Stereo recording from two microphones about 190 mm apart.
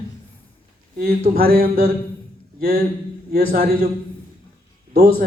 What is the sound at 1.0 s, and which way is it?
Speech, 55° right (ahead or behind).